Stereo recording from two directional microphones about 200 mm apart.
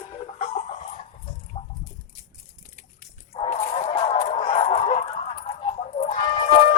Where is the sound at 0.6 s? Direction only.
35° left (ahead or behind).